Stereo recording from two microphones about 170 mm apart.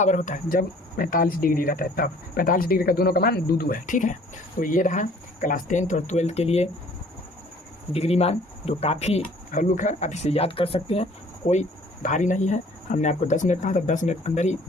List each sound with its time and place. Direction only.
0.0 s speech: 45° left (ahead or behind)
7.9 s speech: 40° left (ahead or behind)